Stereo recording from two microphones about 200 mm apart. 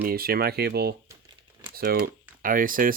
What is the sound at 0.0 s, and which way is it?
Speech, 50° right (ahead or behind).